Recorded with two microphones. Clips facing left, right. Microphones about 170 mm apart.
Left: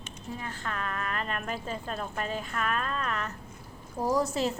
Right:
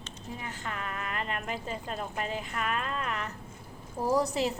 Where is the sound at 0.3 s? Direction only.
20° right (ahead or behind).